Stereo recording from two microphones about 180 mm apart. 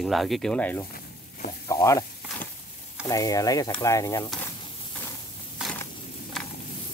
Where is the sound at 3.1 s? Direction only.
20° left (ahead or behind).